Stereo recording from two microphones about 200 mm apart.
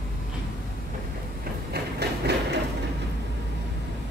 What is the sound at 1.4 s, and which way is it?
Train, 55° right (ahead or behind).